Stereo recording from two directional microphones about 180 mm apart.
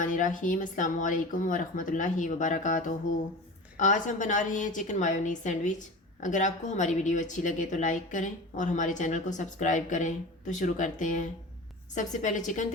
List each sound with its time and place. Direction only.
0.0 s speech: 45° left (ahead or behind)